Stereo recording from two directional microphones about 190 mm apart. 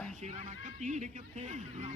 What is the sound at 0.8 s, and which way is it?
A man's voice, 40° right (ahead or behind).